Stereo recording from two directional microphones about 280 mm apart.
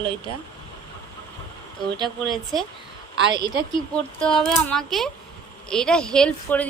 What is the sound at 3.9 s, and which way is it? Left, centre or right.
A woman's voice, centre.